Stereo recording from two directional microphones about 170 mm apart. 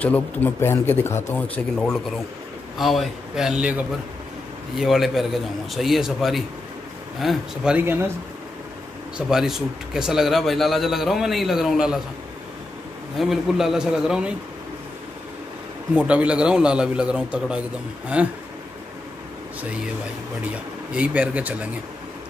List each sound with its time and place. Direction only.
0.0 s speech: 10° left (ahead or behind); by 8.0 s 10° right (ahead or behind)
9.3 s speech: 5° right (ahead or behind)
13.2 s speech: centre (ahead or behind)
15.9 s speech: 5° right (ahead or behind)
20.4 s speech: 5° right (ahead or behind)